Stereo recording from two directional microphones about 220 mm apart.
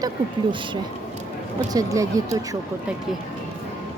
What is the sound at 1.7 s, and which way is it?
Speech, 15° right (ahead or behind).